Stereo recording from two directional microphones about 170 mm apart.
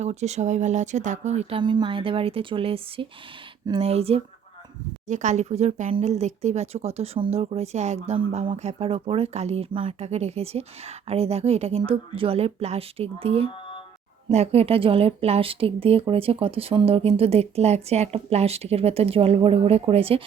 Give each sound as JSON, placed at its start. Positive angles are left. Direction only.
{"t": 0.0, "sound": "speech", "side_deg": -40}